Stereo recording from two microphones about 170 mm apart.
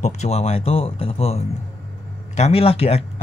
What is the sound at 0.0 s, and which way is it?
Speech, 40° left (ahead or behind).